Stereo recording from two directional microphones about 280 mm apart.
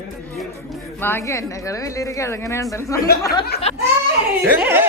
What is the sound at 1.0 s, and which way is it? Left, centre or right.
Speech, centre.